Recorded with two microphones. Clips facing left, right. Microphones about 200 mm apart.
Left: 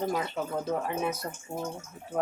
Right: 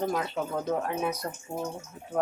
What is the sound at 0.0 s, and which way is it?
Speech, centre (ahead or behind).